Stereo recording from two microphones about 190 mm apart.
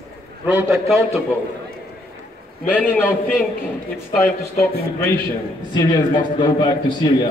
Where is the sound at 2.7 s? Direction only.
10° left (ahead or behind).